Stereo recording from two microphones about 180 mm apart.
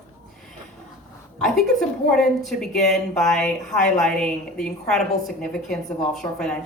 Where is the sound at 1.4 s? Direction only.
5° left (ahead or behind).